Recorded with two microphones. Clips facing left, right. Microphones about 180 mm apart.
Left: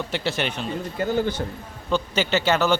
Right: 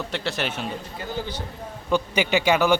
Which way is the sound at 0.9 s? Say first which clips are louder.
Left 12 dB; 55° left (ahead or behind).